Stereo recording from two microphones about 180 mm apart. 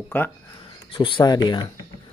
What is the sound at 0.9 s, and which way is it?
Speech, 25° left (ahead or behind).